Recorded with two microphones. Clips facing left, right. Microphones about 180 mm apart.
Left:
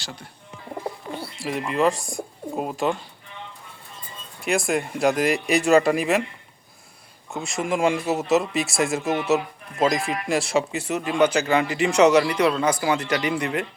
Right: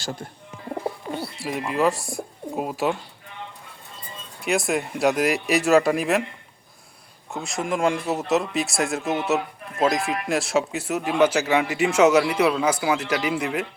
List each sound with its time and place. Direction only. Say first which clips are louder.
0.0 s speech: right 7 dB; 45° right (ahead or behind)
1.4 s speech: left 1 dB; centre (ahead or behind)
4.4 s speech: even; centre (ahead or behind)
7.3 s speech: left 1 dB; centre (ahead or behind)